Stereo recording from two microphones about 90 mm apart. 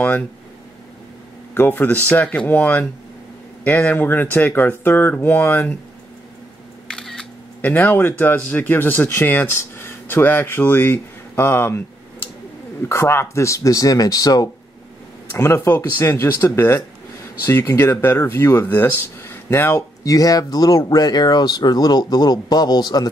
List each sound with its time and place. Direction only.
1.5 s speech: 20° left (ahead or behind)
6.9 s camera: 5° left (ahead or behind)
7.6 s speech: 20° left (ahead or behind); by 14.5 s 45° left (ahead or behind)
15.3 s speech: 30° left (ahead or behind)
20.0 s speech: 40° left (ahead or behind)